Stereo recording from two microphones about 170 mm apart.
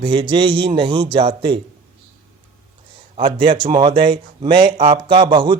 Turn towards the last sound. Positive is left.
turn(degrees=-30)  # may be behind; listen again after turning